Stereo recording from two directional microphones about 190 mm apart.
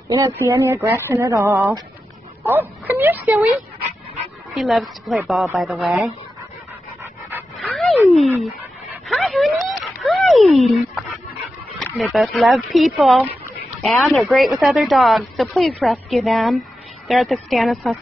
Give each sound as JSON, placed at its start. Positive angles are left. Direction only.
{"t": 0.4, "sound": "speech", "side_deg": -15}
{"t": 7.5, "sound": "dog", "side_deg": 0}
{"t": 11.8, "sound": "speech", "side_deg": 0}